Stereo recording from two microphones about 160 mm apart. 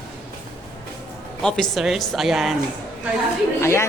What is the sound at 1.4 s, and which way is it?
A woman's voice, 5° left (ahead or behind).